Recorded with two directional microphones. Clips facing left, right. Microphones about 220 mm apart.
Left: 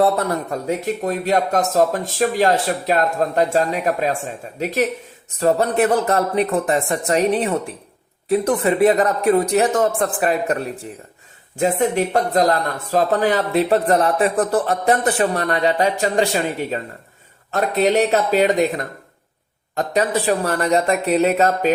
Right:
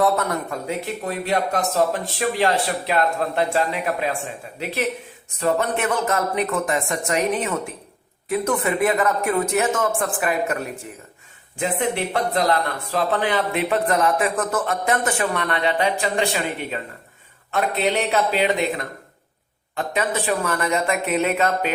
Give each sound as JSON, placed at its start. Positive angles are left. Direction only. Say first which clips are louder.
{"t": 0.0, "sound": "speech", "louder": "left 3 dB", "side_deg": 30}
{"t": 1.0, "sound": "speech", "louder": "left 3 dB", "side_deg": 40}
{"t": 19.7, "sound": "speech", "louder": "left 5 dB", "side_deg": 40}